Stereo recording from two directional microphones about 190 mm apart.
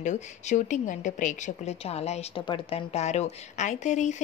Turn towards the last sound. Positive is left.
turn(degrees=40)  # may be behind; listen again after turning